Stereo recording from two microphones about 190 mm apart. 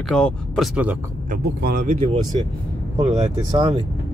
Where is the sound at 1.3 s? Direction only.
55° right (ahead or behind).